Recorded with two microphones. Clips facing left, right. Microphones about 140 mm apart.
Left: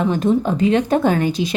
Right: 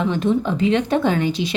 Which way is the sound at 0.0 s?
40° left (ahead or behind).